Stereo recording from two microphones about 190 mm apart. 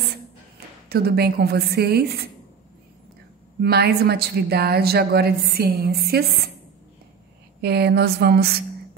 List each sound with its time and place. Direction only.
0.8 s a woman's voice: 55° right (ahead or behind)
3.6 s a woman's voice: 55° right (ahead or behind)
7.6 s a woman's voice: 60° right (ahead or behind)